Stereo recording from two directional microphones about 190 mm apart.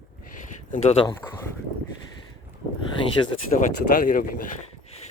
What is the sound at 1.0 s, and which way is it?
Speech, 15° left (ahead or behind).